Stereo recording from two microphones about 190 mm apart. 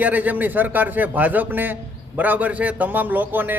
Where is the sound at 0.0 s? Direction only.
10° right (ahead or behind).